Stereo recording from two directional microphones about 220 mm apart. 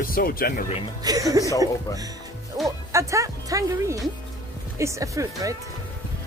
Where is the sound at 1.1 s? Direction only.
15° right (ahead or behind).